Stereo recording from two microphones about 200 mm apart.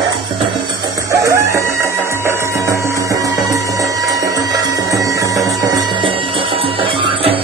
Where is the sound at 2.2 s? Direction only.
15° right (ahead or behind).